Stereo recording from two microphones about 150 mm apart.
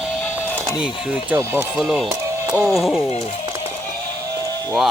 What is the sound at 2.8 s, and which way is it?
Speech, 5° right (ahead or behind).